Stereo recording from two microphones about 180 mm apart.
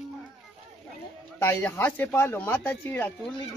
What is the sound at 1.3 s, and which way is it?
Speech, 15° left (ahead or behind).